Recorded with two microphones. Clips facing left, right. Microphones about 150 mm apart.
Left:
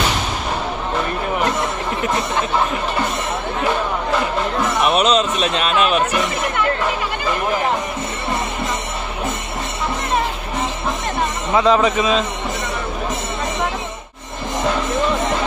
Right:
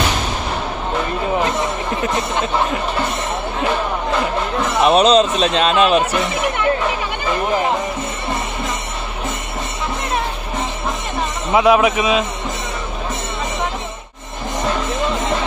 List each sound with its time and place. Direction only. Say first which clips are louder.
4.8 s speech: right 5 dB; 35° right (ahead or behind)
11.5 s a man's voice: right 2 dB; 10° right (ahead or behind)